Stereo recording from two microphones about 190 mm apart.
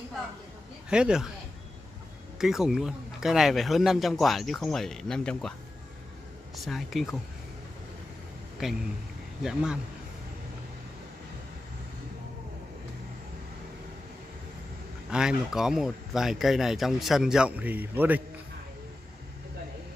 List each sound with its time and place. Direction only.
0.8 s speech: 5° right (ahead or behind)
2.3 s speech: centre (ahead or behind)
6.5 s speech: centre (ahead or behind)
8.6 s speech: centre (ahead or behind)
15.0 s speech: 5° right (ahead or behind)